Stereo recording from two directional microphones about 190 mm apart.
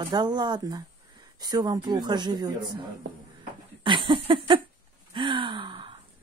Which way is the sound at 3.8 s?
25° right (ahead or behind).